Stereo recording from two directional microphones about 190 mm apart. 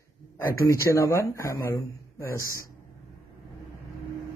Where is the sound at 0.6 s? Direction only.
15° left (ahead or behind).